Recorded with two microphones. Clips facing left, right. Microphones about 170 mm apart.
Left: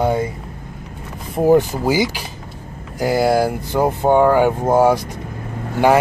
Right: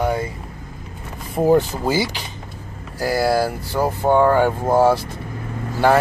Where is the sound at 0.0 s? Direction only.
20° left (ahead or behind).